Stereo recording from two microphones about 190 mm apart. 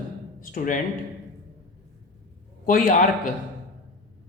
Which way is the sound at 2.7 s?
45° left (ahead or behind).